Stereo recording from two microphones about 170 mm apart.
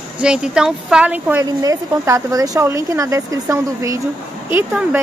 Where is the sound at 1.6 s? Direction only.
20° right (ahead or behind).